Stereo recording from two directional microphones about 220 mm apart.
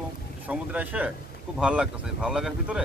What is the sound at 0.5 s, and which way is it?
Speech, 5° right (ahead or behind).